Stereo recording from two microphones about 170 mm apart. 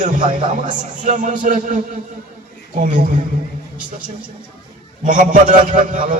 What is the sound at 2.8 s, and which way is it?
Speech, 50° right (ahead or behind).